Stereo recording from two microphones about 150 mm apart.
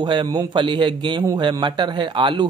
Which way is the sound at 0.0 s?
30° right (ahead or behind).